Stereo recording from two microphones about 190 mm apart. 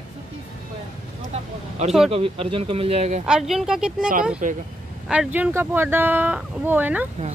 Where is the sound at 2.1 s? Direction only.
30° right (ahead or behind).